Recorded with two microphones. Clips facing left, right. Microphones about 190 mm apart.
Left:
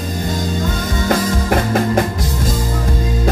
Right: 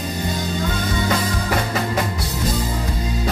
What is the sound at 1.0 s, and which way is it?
Music, 50° left (ahead or behind).